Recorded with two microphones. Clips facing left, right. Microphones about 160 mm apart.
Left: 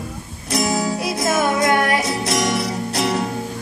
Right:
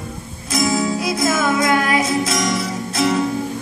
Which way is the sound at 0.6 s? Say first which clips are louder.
Right 2 dB; 35° left (ahead or behind).